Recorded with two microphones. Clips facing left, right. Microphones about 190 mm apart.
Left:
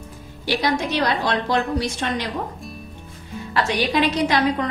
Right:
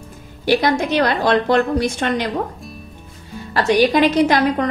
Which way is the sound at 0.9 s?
55° right (ahead or behind).